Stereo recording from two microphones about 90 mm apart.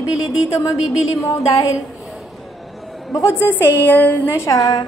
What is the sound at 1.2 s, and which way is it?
Speech, 35° left (ahead or behind).